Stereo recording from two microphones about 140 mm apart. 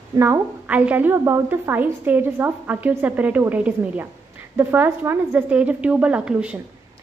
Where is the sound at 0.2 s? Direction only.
15° right (ahead or behind).